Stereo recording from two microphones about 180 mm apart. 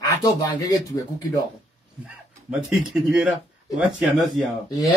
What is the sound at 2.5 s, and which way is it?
Speech, 5° right (ahead or behind).